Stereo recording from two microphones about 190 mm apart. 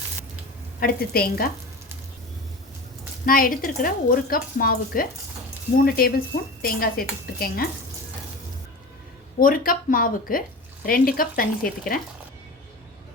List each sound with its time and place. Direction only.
0.8 s speech: 50° left (ahead or behind)
3.2 s speech: 50° left (ahead or behind)
9.4 s speech: 50° left (ahead or behind)